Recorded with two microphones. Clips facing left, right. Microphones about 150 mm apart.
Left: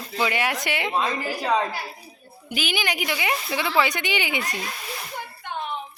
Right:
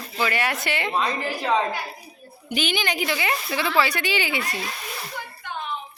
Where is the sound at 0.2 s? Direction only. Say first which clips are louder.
Even; 15° left (ahead or behind).